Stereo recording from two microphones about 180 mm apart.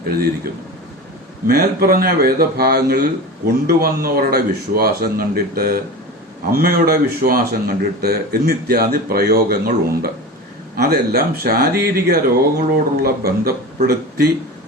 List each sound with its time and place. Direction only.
0.4 s a man's voice: 55° right (ahead or behind)